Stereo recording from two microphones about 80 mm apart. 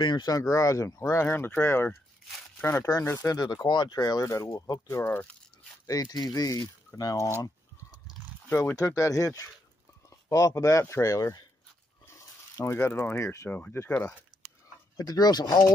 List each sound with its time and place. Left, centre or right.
0.0 s speech: left
0.3 s speech: left
1.2 s speech: left
3.2 s speech: left
5.0 s speech: centre
5.9 s speech: left
8.5 s speech: left
8.7 s speech: left
12.5 s speech: left
13.5 s speech: left
14.3 s dog: right
15.0 s speech: left